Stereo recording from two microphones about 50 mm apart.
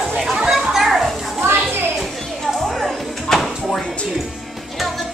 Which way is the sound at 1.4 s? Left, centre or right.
Right.